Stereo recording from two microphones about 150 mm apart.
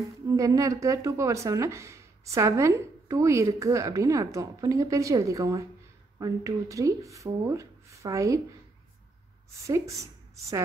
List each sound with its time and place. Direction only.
0.3 s a woman's voice: 20° right (ahead or behind)
9.7 s a woman's voice: 20° right (ahead or behind)